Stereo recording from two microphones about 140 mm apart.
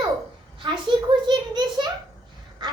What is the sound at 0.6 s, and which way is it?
A child's voice, 35° right (ahead or behind).